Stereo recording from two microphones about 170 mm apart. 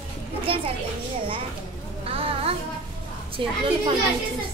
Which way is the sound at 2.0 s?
35° right (ahead or behind).